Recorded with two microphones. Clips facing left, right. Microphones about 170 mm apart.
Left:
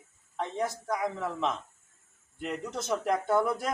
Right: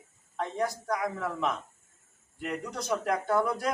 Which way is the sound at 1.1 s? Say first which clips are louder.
Even; 25° left (ahead or behind).